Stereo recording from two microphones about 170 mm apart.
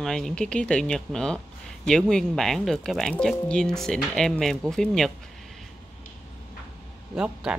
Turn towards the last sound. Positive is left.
turn(degrees=-5)  # may be behind; listen again after turning